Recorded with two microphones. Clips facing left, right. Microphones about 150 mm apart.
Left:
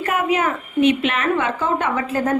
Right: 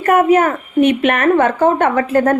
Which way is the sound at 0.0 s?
50° right (ahead or behind).